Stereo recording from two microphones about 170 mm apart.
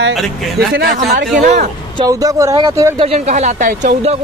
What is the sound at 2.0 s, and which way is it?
Speech, 20° right (ahead or behind).